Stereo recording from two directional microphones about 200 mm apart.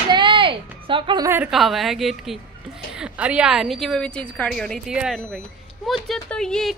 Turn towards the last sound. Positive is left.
turn(degrees=0)  # may be behind; listen again after turning